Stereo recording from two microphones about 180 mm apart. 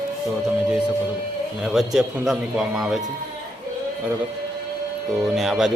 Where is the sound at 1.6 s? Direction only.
5° right (ahead or behind).